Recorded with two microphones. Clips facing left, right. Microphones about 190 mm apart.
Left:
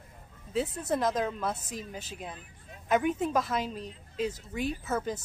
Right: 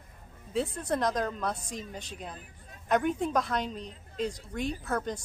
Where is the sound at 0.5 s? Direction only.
5° left (ahead or behind).